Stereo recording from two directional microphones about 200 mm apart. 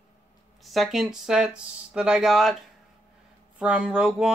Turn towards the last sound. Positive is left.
turn(degrees=-5)  # may be behind; listen again after turning